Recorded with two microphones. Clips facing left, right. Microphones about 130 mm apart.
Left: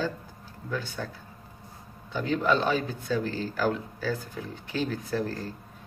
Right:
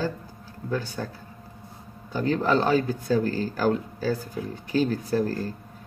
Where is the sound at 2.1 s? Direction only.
40° right (ahead or behind).